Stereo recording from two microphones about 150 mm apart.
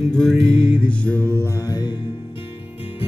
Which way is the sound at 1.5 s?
25° left (ahead or behind).